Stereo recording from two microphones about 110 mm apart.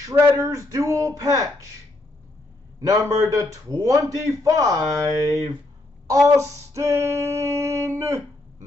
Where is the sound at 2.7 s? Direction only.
30° right (ahead or behind).